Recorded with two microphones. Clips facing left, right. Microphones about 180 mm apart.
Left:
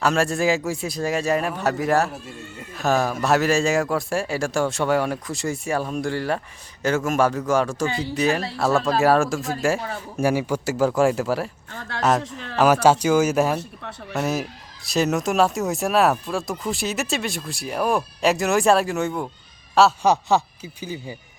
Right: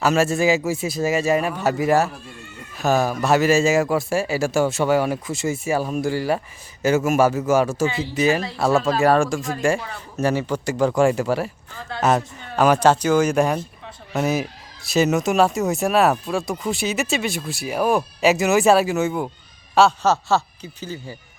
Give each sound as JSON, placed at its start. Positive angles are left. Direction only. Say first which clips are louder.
{"t": 0.0, "sound": "a man's voice", "louder": "right 2 dB", "side_deg": -5}
{"t": 12.2, "sound": "speech", "louder": "left 4 dB", "side_deg": 90}
{"t": 12.5, "sound": "speech", "louder": "even", "side_deg": 5}
{"t": 20.0, "sound": "speech", "louder": "even", "side_deg": 15}